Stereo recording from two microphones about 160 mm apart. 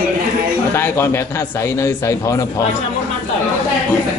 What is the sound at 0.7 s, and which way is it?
A man's voice, 15° left (ahead or behind).